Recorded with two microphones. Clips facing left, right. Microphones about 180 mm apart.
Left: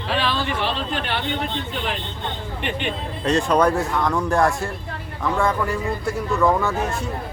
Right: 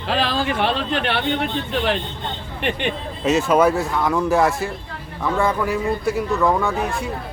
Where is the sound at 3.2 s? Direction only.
5° right (ahead or behind).